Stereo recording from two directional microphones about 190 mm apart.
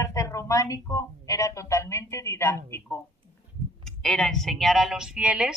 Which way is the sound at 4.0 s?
5° left (ahead or behind).